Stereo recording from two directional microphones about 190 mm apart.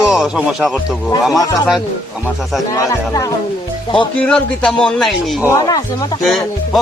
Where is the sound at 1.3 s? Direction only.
20° left (ahead or behind).